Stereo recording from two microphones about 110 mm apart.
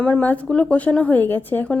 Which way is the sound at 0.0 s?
15° left (ahead or behind).